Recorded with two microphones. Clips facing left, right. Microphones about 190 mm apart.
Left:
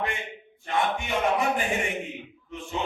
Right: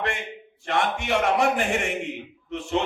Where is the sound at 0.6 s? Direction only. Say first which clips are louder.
Right 2 dB; 75° right (ahead or behind).